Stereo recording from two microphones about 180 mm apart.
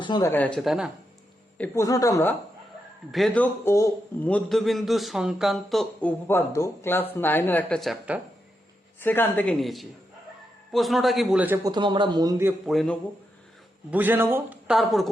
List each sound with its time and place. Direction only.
0.0 s speech: 25° left (ahead or behind)
0.3 s a man's voice: 10° left (ahead or behind)
1.5 s a man's voice: 10° left (ahead or behind)
3.1 s a man's voice: centre (ahead or behind)
9.0 s a man's voice: 10° left (ahead or behind); by 11.7 s 10° right (ahead or behind)
11.7 s speech: 25° right (ahead or behind)
12.6 s a man's voice: centre (ahead or behind)
13.9 s a man's voice: 10° right (ahead or behind)